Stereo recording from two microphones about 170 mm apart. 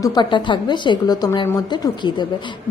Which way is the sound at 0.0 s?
25° left (ahead or behind).